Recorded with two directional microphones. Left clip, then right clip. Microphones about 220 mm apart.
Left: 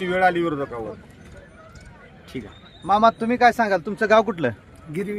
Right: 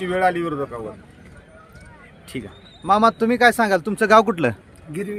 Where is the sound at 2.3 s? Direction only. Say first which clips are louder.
Right 2 dB; 30° right (ahead or behind).